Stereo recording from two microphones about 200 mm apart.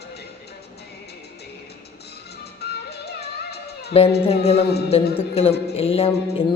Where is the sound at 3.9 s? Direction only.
30° left (ahead or behind).